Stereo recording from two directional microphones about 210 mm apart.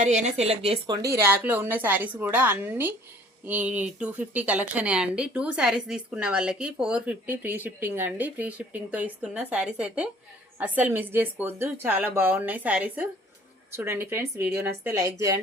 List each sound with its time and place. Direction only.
0.0 s speech: 35° right (ahead or behind)
1.0 s speech: 10° right (ahead or behind)